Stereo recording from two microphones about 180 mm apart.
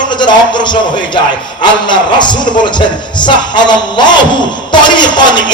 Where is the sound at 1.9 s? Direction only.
25° left (ahead or behind).